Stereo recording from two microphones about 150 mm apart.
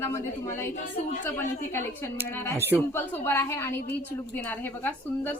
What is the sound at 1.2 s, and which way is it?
A woman's voice, 15° left (ahead or behind).